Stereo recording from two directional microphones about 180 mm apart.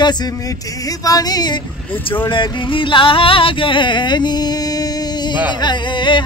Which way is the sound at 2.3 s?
25° left (ahead or behind).